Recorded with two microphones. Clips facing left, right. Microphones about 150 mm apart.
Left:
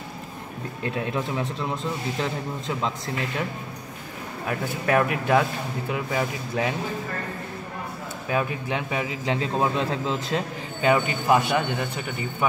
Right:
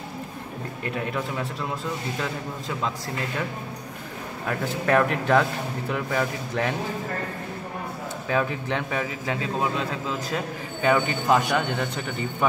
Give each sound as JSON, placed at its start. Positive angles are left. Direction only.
{"t": 4.5, "sound": "speech", "side_deg": 10}
{"t": 8.3, "sound": "speech", "side_deg": 10}
{"t": 9.3, "sound": "a man's voice", "side_deg": 30}
{"t": 10.8, "sound": "speech", "side_deg": 15}